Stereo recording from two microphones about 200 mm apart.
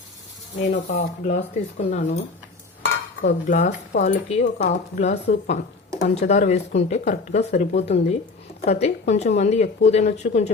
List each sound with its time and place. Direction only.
0.6 s speech: 40° left (ahead or behind)
3.2 s speech: 40° left (ahead or behind)